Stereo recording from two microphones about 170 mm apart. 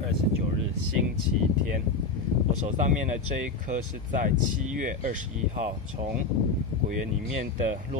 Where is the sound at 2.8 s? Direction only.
45° right (ahead or behind).